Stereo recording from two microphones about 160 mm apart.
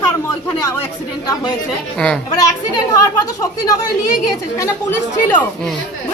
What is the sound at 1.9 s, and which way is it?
Speech, 5° left (ahead or behind).